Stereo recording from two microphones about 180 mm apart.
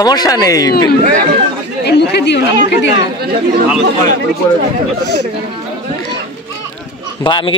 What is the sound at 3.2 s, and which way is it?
Speech, 60° right (ahead or behind).